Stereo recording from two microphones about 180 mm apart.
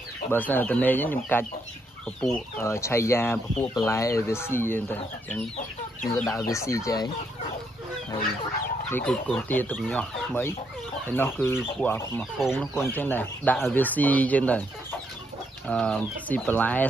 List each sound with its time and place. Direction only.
0.3 s speech: 10° left (ahead or behind)
8.9 s speech: 5° left (ahead or behind)